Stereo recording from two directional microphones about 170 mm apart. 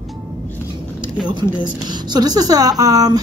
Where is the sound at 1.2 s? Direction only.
25° right (ahead or behind).